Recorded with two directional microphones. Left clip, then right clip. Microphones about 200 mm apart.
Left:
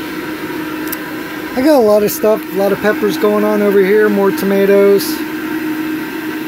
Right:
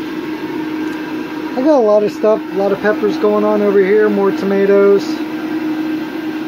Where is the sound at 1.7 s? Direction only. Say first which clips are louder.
Left 1 dB; 15° left (ahead or behind).